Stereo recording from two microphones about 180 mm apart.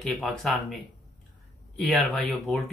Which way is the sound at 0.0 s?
Centre (ahead or behind).